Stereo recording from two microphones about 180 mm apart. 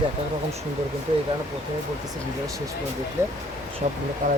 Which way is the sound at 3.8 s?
40° right (ahead or behind).